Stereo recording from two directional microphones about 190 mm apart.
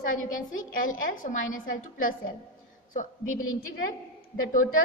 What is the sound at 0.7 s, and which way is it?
Speech, 45° left (ahead or behind).